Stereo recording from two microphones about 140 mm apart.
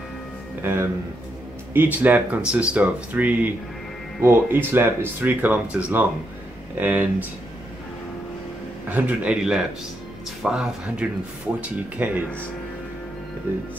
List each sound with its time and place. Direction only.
0.6 s speech: 15° right (ahead or behind)
8.8 s speech: 10° right (ahead or behind)